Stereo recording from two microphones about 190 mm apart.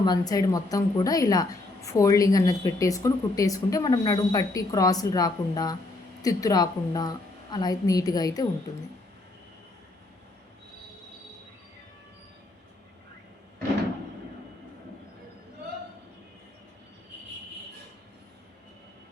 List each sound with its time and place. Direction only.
0.0 s a woman's voice: 20° left (ahead or behind)